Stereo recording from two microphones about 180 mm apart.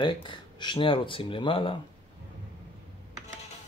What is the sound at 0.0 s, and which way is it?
Speech, 25° left (ahead or behind).